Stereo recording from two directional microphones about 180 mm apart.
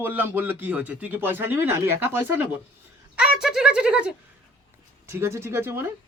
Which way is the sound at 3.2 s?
5° right (ahead or behind).